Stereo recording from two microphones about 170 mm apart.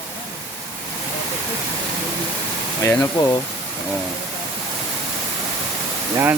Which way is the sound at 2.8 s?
15° left (ahead or behind).